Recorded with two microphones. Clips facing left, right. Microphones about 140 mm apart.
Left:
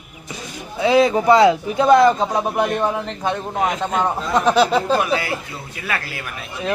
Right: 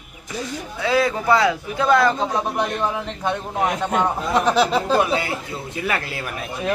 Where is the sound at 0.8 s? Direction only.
20° left (ahead or behind); by 5.0 s centre (ahead or behind).